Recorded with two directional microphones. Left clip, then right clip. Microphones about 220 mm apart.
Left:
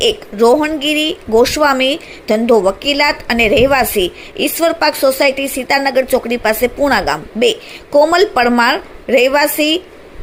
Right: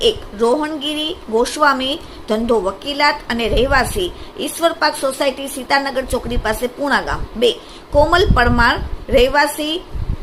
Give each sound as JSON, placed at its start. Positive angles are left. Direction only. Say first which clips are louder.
{"t": 0.0, "sound": "speech", "louder": "left 4 dB", "side_deg": 20}